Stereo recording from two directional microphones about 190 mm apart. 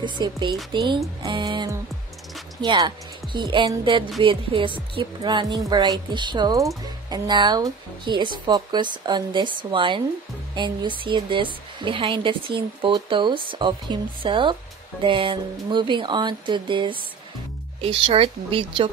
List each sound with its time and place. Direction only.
0.0 s a woman's voice: 25° right (ahead or behind)